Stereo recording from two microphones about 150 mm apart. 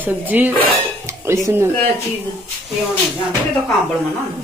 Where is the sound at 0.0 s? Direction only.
10° right (ahead or behind).